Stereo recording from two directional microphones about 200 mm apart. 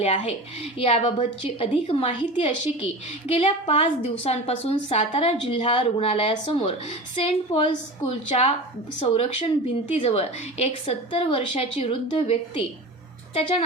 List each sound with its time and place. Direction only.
0.0 s a woman's voice: 30° left (ahead or behind)